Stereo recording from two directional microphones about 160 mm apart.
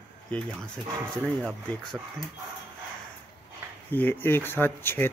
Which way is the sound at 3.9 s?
15° left (ahead or behind).